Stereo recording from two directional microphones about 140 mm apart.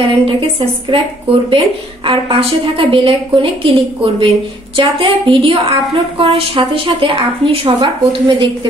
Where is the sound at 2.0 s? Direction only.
40° right (ahead or behind).